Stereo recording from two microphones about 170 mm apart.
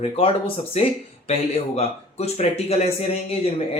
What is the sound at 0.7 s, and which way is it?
A man's voice, 35° left (ahead or behind).